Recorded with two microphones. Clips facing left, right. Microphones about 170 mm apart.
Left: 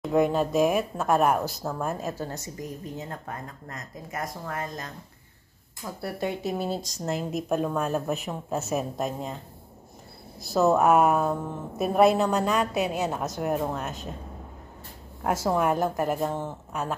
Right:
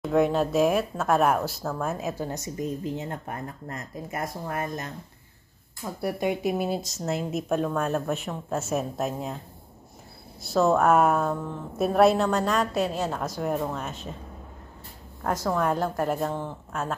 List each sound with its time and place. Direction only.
0.0 s a woman's voice: centre (ahead or behind); by 4.9 s 25° right (ahead or behind)
5.9 s speech: 15° right (ahead or behind)
10.4 s speech: centre (ahead or behind)
15.4 s a woman's voice: 15° left (ahead or behind)
15.7 s speech: 5° left (ahead or behind)